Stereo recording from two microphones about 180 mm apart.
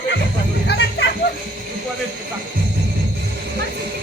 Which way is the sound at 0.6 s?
70° left (ahead or behind).